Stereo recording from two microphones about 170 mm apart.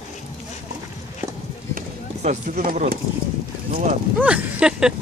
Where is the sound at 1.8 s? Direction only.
45° right (ahead or behind).